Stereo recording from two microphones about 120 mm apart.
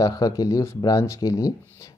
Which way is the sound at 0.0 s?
30° left (ahead or behind).